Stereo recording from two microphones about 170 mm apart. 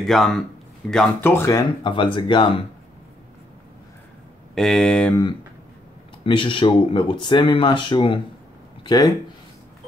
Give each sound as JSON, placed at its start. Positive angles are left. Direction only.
{"t": 0.0, "sound": "speech", "side_deg": 0}
{"t": 1.8, "sound": "speech", "side_deg": 30}
{"t": 4.6, "sound": "speech", "side_deg": 0}
{"t": 6.2, "sound": "speech", "side_deg": 30}